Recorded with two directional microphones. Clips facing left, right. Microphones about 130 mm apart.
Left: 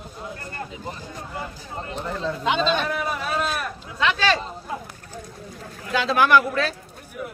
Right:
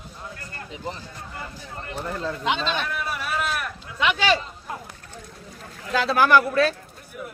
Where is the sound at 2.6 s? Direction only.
20° left (ahead or behind).